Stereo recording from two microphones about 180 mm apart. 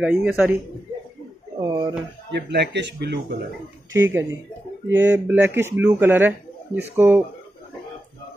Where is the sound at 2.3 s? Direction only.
65° right (ahead or behind).